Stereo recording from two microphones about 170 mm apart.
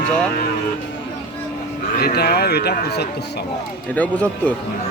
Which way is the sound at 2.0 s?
65° left (ahead or behind).